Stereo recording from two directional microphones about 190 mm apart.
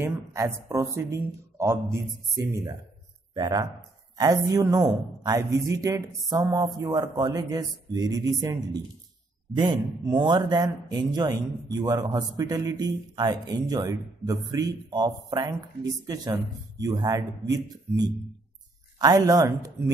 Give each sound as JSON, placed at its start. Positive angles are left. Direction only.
{"t": 0.0, "sound": "speech", "side_deg": -15}
{"t": 9.6, "sound": "speech", "side_deg": -20}
{"t": 18.9, "sound": "speech", "side_deg": -20}